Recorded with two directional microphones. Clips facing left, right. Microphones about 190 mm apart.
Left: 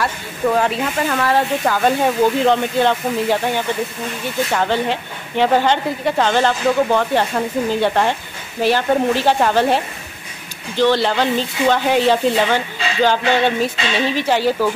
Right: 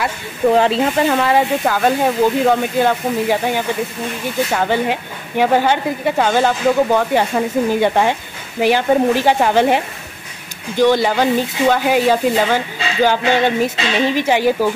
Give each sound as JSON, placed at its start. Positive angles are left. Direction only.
{"t": 0.5, "sound": "speech", "side_deg": -30}
{"t": 1.6, "sound": "speech", "side_deg": -5}
{"t": 10.8, "sound": "speech", "side_deg": -15}